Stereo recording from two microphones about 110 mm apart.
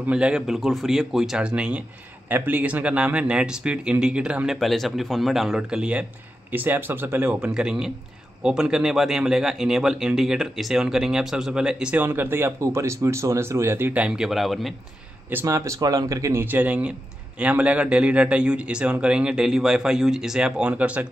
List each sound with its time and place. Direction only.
0.0 s a man's voice: 10° right (ahead or behind)
4.6 s a man's voice: centre (ahead or behind)
15.4 s a man's voice: 25° right (ahead or behind)